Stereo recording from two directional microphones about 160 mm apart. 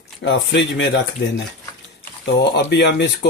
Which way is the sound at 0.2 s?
90° left.